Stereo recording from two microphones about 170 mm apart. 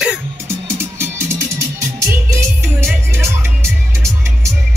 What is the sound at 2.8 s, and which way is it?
Music, 15° right (ahead or behind).